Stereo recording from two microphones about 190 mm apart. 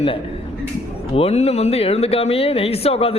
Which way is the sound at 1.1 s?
35° left (ahead or behind).